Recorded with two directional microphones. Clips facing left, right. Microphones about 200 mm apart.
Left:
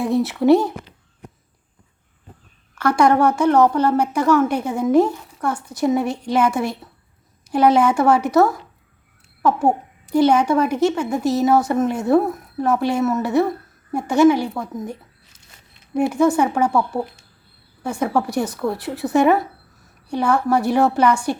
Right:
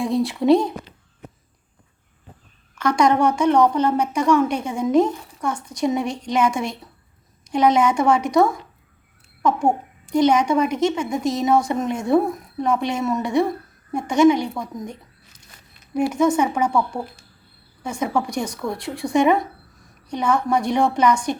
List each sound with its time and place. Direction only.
0.0 s a sound: 5° left (ahead or behind)
2.8 s a child's voice: 5° left (ahead or behind)
15.8 s zipper: 25° left (ahead or behind)
16.1 s a child's voice: 10° left (ahead or behind)